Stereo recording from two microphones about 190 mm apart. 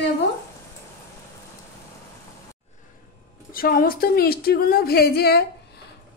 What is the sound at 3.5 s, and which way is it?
A woman's voice, 50° left (ahead or behind).